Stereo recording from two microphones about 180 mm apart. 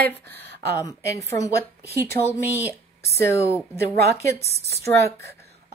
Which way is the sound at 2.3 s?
10° right (ahead or behind).